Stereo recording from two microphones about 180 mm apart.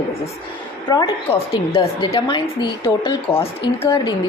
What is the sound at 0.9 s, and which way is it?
A woman's voice, 25° left (ahead or behind).